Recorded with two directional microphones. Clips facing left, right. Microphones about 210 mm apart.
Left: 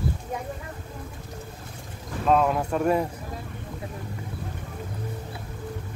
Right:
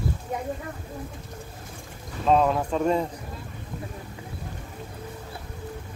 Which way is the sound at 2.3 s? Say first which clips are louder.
Right 1 dB; 5° left (ahead or behind).